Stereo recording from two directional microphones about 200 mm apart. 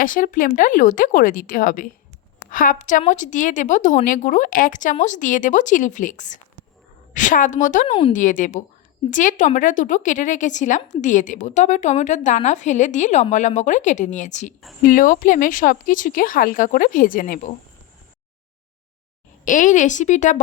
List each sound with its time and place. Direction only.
0.0 s a woman's voice: 40° left (ahead or behind)
19.5 s a woman's voice: 40° left (ahead or behind)